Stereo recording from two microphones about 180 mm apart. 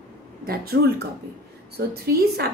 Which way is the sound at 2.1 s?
60° right (ahead or behind).